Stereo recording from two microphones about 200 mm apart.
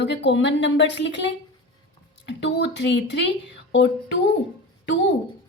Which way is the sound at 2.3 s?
60° left (ahead or behind).